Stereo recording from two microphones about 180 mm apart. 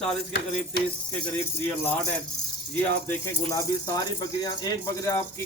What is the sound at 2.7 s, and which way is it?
Speech, 15° left (ahead or behind).